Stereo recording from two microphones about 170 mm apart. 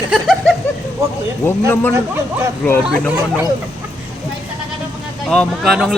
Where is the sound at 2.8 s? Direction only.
5° right (ahead or behind).